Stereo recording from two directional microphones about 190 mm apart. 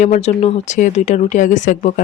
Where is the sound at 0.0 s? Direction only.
40° left (ahead or behind).